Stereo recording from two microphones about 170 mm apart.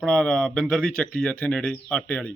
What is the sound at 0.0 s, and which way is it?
A man's voice, 5° left (ahead or behind).